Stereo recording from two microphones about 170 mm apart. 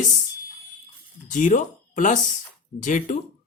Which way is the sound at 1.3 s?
50° left (ahead or behind).